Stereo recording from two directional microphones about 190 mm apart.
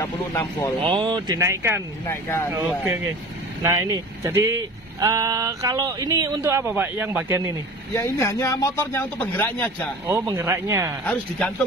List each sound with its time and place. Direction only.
0.0 s speech: 15° left (ahead or behind)
0.8 s speech: 25° right (ahead or behind)
2.0 s speech: 10° left (ahead or behind)
2.6 s speech: 15° right (ahead or behind)
7.9 s speech: 15° left (ahead or behind)
10.0 s speech: 15° right (ahead or behind)
11.1 s speech: 5° left (ahead or behind)